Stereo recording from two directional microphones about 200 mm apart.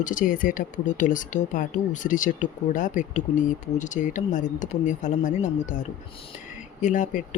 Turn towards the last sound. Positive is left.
turn(degrees=40)  # may be behind; listen again after turning